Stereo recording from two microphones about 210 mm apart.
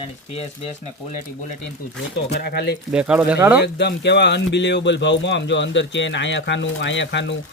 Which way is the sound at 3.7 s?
55° left (ahead or behind).